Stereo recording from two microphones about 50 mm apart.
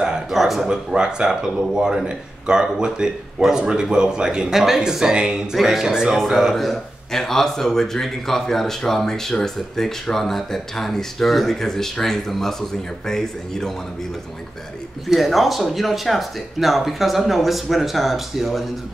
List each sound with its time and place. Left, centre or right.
0.3 s speech: centre
0.7 s speech: centre
6.1 s a man's voice: centre
15.0 s speech: centre